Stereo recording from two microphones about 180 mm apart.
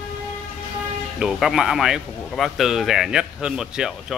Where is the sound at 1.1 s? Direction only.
5° right (ahead or behind).